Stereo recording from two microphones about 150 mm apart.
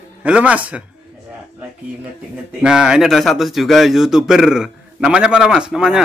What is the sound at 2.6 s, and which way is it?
Speech, 5° right (ahead or behind).